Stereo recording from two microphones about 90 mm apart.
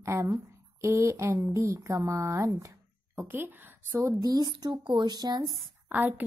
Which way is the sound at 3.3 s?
20° right (ahead or behind).